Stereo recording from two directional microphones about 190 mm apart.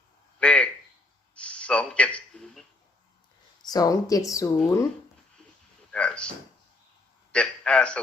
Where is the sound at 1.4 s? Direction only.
5° left (ahead or behind).